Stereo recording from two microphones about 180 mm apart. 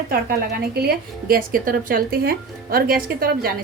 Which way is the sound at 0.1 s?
60° right (ahead or behind).